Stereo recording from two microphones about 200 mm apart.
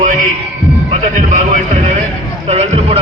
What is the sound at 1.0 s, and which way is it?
Speech, 40° right (ahead or behind).